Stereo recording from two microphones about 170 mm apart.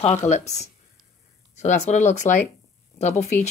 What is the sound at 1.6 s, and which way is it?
Speech, 45° left (ahead or behind).